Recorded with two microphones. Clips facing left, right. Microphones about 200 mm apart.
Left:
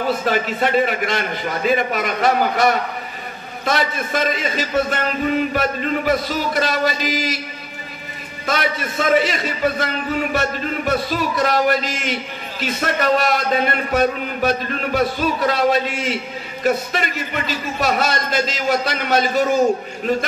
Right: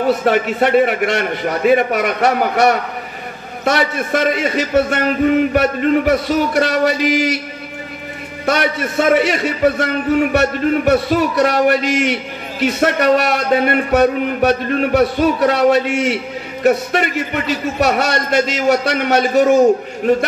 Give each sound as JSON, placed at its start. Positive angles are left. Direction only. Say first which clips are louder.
{"t": 0.2, "sound": "a man's voice", "louder": "right 5 dB", "side_deg": -65}
{"t": 8.5, "sound": "a man's voice", "louder": "right 5 dB", "side_deg": -65}